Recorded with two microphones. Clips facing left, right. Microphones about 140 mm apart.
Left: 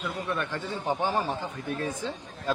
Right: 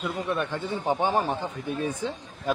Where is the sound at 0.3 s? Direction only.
15° right (ahead or behind).